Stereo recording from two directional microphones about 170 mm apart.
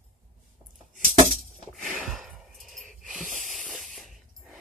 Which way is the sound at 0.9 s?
50° right (ahead or behind).